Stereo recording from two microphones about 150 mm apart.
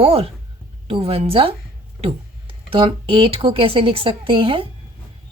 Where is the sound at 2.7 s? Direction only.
35° right (ahead or behind).